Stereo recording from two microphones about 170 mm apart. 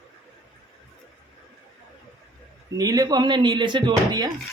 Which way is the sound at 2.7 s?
20° right (ahead or behind).